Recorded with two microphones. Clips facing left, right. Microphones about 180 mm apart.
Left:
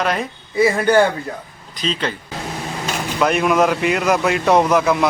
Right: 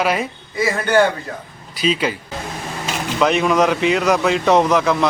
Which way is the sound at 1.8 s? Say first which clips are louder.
Right 4 dB; 10° right (ahead or behind).